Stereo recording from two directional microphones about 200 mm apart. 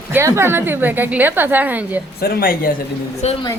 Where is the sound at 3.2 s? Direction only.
35° left (ahead or behind).